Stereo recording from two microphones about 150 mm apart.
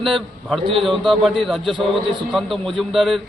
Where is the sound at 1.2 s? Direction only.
Centre (ahead or behind).